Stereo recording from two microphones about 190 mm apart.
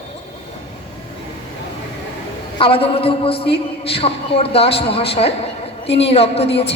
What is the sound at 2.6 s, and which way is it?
A man's voice, 30° left (ahead or behind).